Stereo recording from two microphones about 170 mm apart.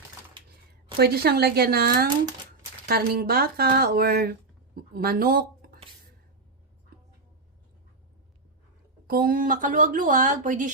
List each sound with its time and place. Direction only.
0.9 s speech: 65° right (ahead or behind)
9.0 s speech: 55° right (ahead or behind)